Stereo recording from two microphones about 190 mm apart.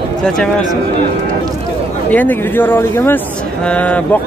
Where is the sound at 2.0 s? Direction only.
10° left (ahead or behind).